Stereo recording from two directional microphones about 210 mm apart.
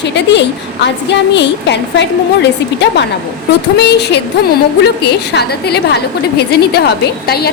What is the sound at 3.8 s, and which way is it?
A woman's voice, 50° left (ahead or behind).